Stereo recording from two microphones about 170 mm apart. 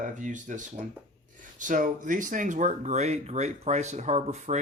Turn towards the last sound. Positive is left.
turn(degrees=-40)  # may be behind; listen again after turning